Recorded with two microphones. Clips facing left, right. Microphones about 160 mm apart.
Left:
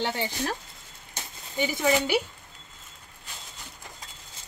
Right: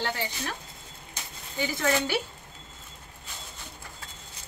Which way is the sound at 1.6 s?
15° left (ahead or behind).